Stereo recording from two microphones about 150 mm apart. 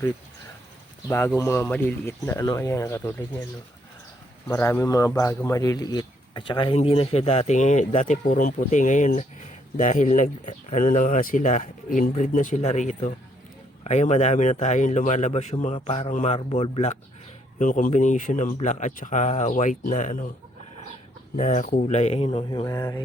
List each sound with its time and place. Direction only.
1.0 s speech: 15° left (ahead or behind)
4.4 s a man's voice: 20° left (ahead or behind); by 17.0 s 45° left (ahead or behind)
17.6 s speech: 60° left (ahead or behind)
21.3 s a man's voice: 55° left (ahead or behind)
22.6 s speech: 25° left (ahead or behind)